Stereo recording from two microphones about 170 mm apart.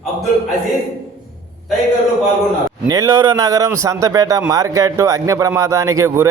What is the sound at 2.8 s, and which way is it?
A man's voice, 20° right (ahead or behind).